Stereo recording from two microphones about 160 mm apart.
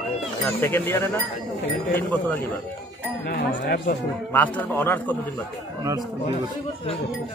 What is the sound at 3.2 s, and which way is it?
Speech, 75° left (ahead or behind).